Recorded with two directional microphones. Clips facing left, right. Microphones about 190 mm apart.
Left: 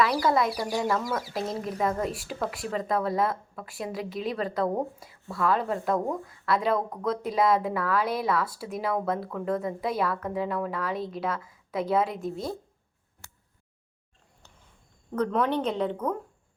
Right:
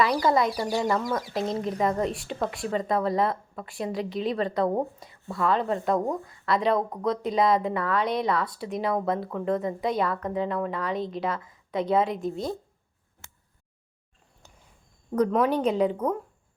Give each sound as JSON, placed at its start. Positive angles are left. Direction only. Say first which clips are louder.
{"t": 0.0, "sound": "a woman's voice", "louder": "right 1 dB", "side_deg": 5}
{"t": 13.2, "sound": "a sound", "louder": "right 1 dB", "side_deg": -20}
{"t": 15.1, "sound": "a woman's voice", "louder": "right 3 dB", "side_deg": -10}